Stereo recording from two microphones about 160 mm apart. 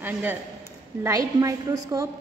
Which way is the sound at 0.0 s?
10° right (ahead or behind).